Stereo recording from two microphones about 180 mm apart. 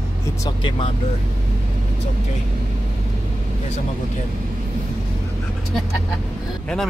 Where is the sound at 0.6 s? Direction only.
25° left (ahead or behind).